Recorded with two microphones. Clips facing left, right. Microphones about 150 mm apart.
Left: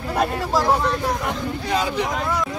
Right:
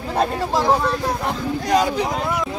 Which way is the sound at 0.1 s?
25° right (ahead or behind).